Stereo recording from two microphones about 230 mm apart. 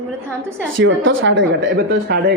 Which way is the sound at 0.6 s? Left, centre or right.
Right.